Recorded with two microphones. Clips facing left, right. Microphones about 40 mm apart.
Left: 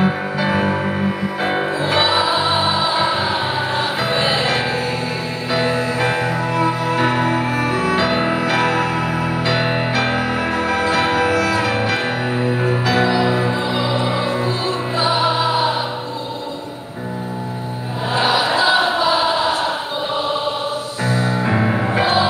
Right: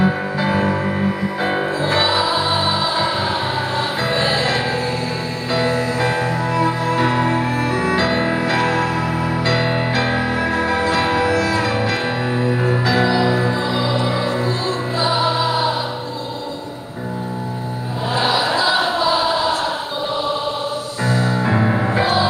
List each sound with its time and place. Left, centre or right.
0.0 s music: left
7.0 s music: left
8.5 s music: left
18.1 s choir: left
21.0 s music: left
21.9 s music: left